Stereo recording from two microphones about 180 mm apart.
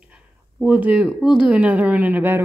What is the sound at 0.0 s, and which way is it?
Speech, 5° right (ahead or behind).